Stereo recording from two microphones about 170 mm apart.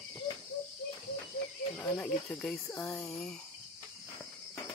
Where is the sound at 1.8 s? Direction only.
5° left (ahead or behind).